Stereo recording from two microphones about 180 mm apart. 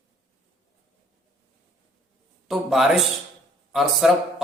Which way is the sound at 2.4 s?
Centre (ahead or behind).